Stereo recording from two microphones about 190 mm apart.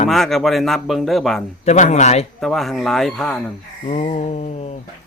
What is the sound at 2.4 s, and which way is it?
A man's voice, centre (ahead or behind).